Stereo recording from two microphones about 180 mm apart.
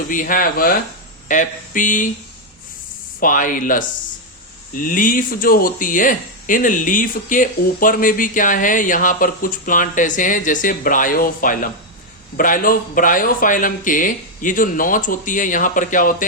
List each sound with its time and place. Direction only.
0.1 s speech: 50° left (ahead or behind)
3.2 s speech: 50° left (ahead or behind)